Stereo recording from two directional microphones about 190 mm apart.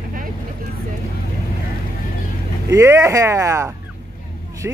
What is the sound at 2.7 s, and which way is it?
Speech, 15° right (ahead or behind).